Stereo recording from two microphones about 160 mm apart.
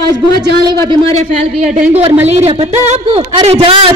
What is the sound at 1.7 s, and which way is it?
A man's voice, 40° right (ahead or behind).